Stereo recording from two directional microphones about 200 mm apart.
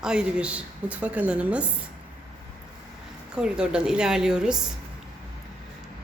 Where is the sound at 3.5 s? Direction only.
5° right (ahead or behind).